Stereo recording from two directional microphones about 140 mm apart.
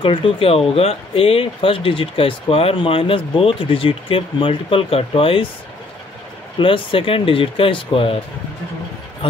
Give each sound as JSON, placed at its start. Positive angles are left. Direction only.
{"t": 0.0, "sound": "speech", "side_deg": 40}
{"t": 6.6, "sound": "speech", "side_deg": 40}
{"t": 9.2, "sound": "speech", "side_deg": 40}